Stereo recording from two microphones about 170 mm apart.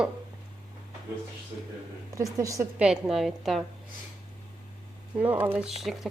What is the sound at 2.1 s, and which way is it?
Speech, 20° right (ahead or behind).